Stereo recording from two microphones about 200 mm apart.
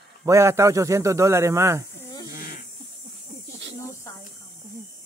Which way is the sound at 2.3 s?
45° left (ahead or behind).